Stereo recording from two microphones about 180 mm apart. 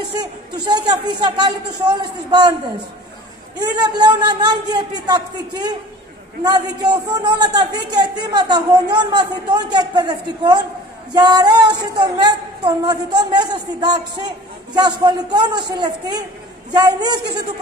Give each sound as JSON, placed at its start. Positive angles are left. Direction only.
{"t": 0.1, "sound": "a woman's voice", "side_deg": -25}
{"t": 3.5, "sound": "a woman's voice", "side_deg": -25}